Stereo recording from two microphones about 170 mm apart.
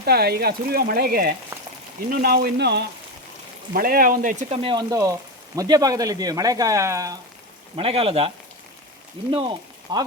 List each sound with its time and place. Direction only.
0.0 s speech: 65° right (ahead or behind)
1.5 s a sound: 15° right (ahead or behind)
2.0 s speech: 65° right (ahead or behind)
3.7 s speech: 60° right (ahead or behind)
4.4 s speech: 35° right (ahead or behind); by 7.2 s 20° right (ahead or behind)
7.8 s speech: 35° right (ahead or behind)
9.3 s speech: 30° right (ahead or behind)